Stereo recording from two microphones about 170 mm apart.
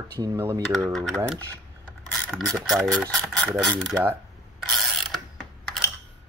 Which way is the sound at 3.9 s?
15° right (ahead or behind).